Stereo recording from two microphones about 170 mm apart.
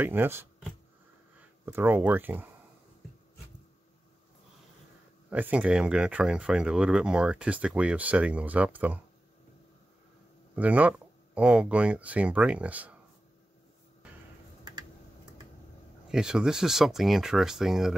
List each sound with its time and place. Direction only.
0.0 s speech: 10° right (ahead or behind)
5.3 s speech: 10° right (ahead or behind)
10.5 s speech: 10° right (ahead or behind)
16.1 s speech: 5° right (ahead or behind)